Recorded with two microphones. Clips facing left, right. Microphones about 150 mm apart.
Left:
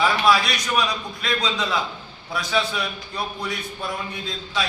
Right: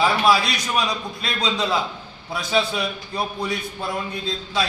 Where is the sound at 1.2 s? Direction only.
30° right (ahead or behind).